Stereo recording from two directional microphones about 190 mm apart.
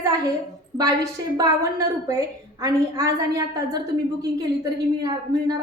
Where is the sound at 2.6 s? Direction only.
15° right (ahead or behind).